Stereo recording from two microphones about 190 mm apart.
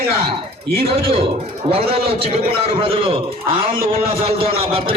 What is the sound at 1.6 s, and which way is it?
A man's voice, 30° right (ahead or behind).